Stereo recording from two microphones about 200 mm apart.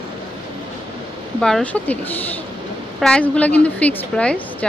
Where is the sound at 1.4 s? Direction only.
Centre (ahead or behind).